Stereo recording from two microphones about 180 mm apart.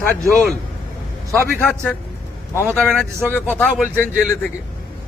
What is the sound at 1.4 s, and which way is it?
A man's voice, 10° left (ahead or behind).